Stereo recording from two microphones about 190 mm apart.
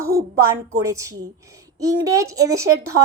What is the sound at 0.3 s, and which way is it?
A child's voice, 15° right (ahead or behind).